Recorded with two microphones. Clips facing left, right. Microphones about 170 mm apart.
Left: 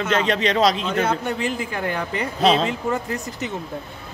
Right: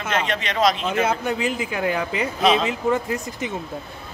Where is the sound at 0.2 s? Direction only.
35° left (ahead or behind).